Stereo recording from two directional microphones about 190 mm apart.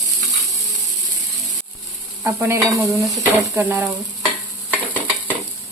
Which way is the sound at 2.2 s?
15° right (ahead or behind).